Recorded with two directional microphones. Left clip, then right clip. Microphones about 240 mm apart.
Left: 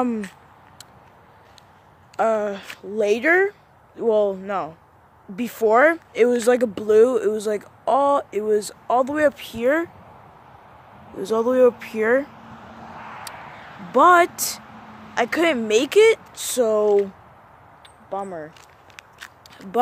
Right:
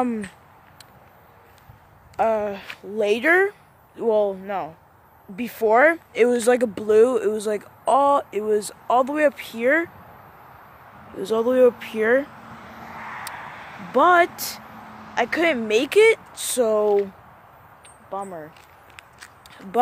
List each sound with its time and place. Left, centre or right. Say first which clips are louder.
0.0 s speech: left 1 dB; centre
2.1 s speech: left 1 dB; centre
11.1 s speech: even; centre
12.4 s vehicle: right 1 dB; right
13.9 s speech: left 2 dB; centre
18.1 s speech: left 2 dB; centre
18.9 s a sound: left 4 dB; centre